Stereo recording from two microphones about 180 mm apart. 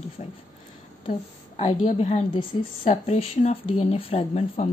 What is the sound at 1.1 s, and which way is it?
Speech, 35° left (ahead or behind).